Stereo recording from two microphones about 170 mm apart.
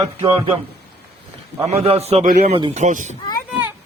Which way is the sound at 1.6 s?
35° right (ahead or behind).